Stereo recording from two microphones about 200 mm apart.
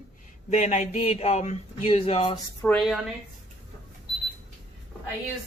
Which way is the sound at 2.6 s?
Centre (ahead or behind).